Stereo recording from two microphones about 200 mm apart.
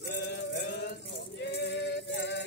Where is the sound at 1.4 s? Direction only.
60° left (ahead or behind).